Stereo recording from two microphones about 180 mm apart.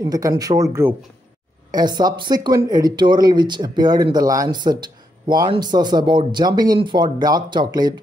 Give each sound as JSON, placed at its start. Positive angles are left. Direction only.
{"t": 0.0, "sound": "speech", "side_deg": -20}